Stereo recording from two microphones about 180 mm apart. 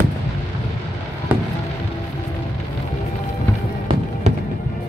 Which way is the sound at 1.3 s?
10° right (ahead or behind).